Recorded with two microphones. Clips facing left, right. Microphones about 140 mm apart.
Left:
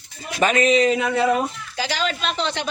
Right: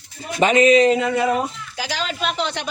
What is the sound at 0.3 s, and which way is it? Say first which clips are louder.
Speech: right 4 dB; 20° right (ahead or behind).